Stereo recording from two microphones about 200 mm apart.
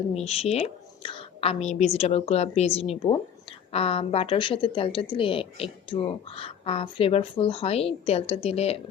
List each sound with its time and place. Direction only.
0.1 s a woman's voice: 30° left (ahead or behind)